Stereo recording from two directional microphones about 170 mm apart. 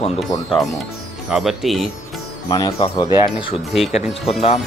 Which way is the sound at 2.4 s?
20° left (ahead or behind).